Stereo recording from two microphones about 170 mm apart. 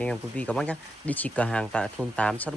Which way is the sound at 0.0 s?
5° left (ahead or behind).